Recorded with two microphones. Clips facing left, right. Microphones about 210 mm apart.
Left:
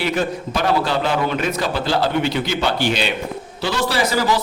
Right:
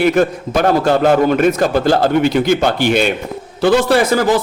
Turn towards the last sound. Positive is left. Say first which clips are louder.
# right 7 dB
turn(degrees=-50)  # may be behind; listen again after turning